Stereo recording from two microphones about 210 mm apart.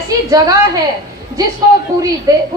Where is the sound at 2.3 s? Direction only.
15° right (ahead or behind).